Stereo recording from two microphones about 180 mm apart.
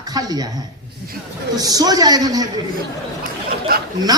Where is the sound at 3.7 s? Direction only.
55° right (ahead or behind).